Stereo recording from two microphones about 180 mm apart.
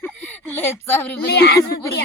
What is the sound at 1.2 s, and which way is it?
Speech, 60° left (ahead or behind).